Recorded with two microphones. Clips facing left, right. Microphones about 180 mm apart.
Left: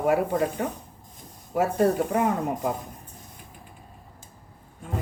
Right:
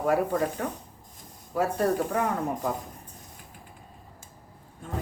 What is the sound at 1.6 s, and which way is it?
Speech, 20° left (ahead or behind).